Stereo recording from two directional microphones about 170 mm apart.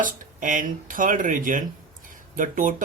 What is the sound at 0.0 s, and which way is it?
Speech, 50° right (ahead or behind).